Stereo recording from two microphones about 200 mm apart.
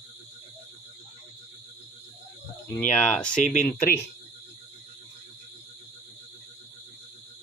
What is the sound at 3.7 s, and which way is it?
Speech, 50° left (ahead or behind).